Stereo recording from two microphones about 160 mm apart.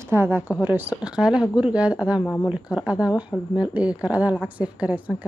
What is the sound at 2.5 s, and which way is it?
A woman's voice, 5° right (ahead or behind).